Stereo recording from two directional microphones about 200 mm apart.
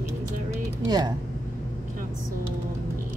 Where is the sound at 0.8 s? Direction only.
20° right (ahead or behind).